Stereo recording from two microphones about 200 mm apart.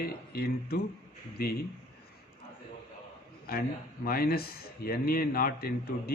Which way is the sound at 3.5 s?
50° left (ahead or behind).